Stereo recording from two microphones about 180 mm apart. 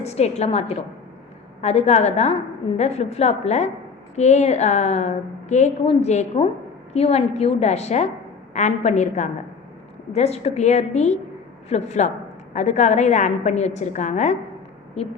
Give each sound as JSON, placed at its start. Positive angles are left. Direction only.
{"t": 0.0, "sound": "a woman's voice", "side_deg": 35}